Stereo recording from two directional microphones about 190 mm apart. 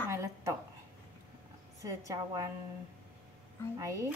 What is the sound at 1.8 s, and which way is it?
Speech, 15° right (ahead or behind).